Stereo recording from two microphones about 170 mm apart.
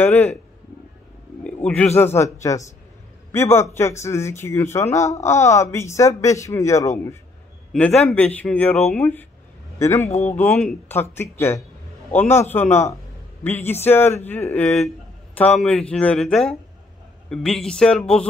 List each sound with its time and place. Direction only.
0.0 s speech: 10° left (ahead or behind)
2.0 s speech: 15° left (ahead or behind)
7.7 s speech: 5° left (ahead or behind)